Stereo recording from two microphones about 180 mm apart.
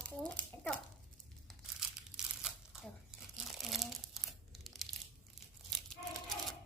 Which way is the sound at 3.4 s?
Centre (ahead or behind).